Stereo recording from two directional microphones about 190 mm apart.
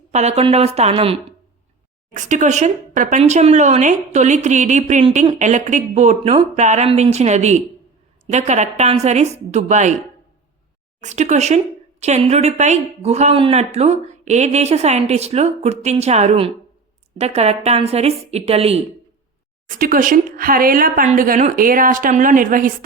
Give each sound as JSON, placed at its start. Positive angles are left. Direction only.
{"t": 0.1, "sound": "speech", "side_deg": -35}
{"t": 2.1, "sound": "speech", "side_deg": -40}
{"t": 11.0, "sound": "speech", "side_deg": -40}
{"t": 19.6, "sound": "speech", "side_deg": -45}